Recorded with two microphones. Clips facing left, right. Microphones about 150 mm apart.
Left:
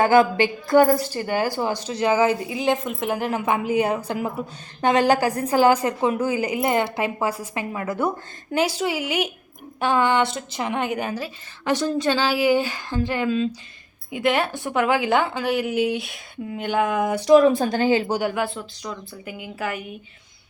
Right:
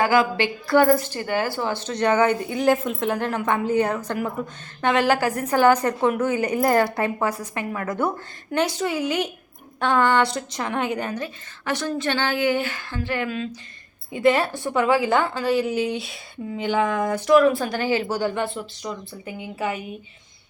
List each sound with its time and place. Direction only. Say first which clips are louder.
0.2 s a sound: left 4 dB; 45° left (ahead or behind)
0.7 s a woman's voice: left 1 dB; 15° left (ahead or behind)
0.9 s a woman's voice: left 1 dB; 35° left (ahead or behind)
1.2 s a woman's voice: left 1 dB; 15° left (ahead or behind)
5.3 s a woman's voice: even; 35° left (ahead or behind)
14.1 s a woman's voice: right 2 dB; centre (ahead or behind); by 18.2 s 20° left (ahead or behind)
18.2 s a woman's voice: even; 5° left (ahead or behind)